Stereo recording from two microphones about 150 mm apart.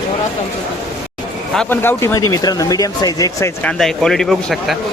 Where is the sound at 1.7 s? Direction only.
15° left (ahead or behind).